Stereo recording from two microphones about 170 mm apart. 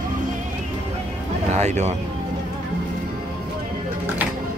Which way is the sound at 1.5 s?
40° right (ahead or behind).